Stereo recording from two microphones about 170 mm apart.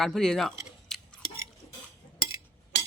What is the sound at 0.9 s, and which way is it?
Tick-tock, 5° left (ahead or behind).